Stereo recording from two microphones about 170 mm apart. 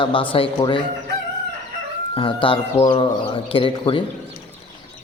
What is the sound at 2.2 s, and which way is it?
A man's voice, 30° left (ahead or behind).